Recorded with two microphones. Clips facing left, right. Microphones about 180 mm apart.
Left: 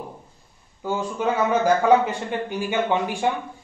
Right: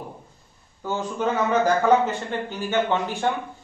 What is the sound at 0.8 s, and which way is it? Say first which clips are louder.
Speech: left 1 dB; 10° left (ahead or behind).